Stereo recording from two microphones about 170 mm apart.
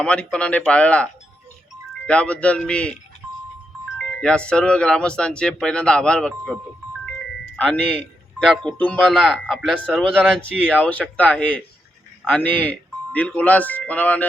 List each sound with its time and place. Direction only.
0.0 s speech: 5° left (ahead or behind)
3.9 s speech: 5° left (ahead or behind)